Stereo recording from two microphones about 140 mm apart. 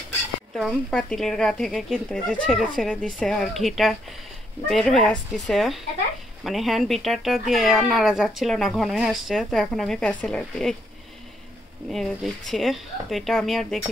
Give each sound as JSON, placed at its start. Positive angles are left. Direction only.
{"t": 0.6, "sound": "speech", "side_deg": 0}
{"t": 11.9, "sound": "speech", "side_deg": 0}